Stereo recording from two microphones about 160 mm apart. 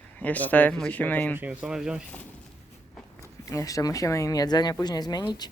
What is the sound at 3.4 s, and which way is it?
Speech, 20° left (ahead or behind).